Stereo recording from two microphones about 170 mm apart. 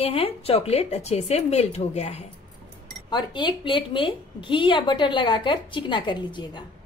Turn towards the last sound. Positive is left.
turn(degrees=25)  # may be behind; listen again after turning